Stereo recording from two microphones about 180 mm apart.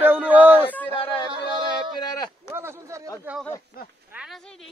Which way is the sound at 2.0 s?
20° left (ahead or behind).